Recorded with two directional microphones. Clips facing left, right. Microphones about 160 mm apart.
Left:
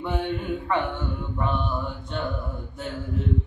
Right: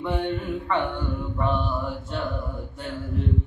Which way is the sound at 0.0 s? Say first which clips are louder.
Right 1 dB; centre (ahead or behind).